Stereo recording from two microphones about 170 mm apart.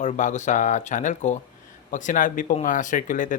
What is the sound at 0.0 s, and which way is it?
Speech, 45° left (ahead or behind).